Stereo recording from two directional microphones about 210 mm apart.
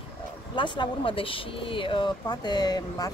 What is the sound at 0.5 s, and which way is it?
Speech, 20° left (ahead or behind).